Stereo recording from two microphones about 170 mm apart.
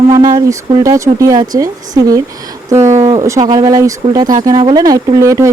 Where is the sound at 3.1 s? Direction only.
20° right (ahead or behind).